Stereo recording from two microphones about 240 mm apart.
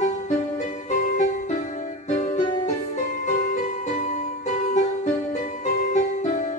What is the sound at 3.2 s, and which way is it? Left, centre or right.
Music, left.